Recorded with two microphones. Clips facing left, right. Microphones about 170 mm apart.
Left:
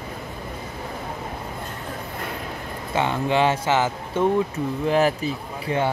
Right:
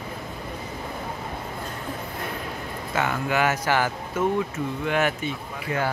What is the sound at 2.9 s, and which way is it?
Speech, 25° left (ahead or behind).